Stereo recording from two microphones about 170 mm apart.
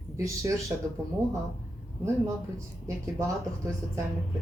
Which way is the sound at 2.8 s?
20° right (ahead or behind).